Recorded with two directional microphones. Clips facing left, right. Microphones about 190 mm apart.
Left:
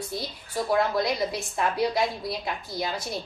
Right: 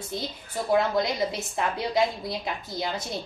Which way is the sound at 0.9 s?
20° right (ahead or behind).